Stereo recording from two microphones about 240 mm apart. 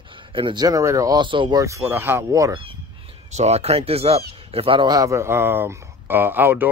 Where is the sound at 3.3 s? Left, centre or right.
Right.